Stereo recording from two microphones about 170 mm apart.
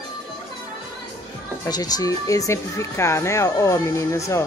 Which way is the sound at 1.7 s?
20° left (ahead or behind).